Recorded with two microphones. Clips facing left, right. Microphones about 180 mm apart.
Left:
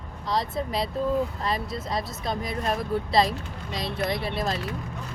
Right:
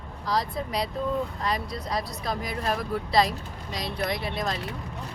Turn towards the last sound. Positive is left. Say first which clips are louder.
# left 2 dB
turn(degrees=30)  # may be behind; listen again after turning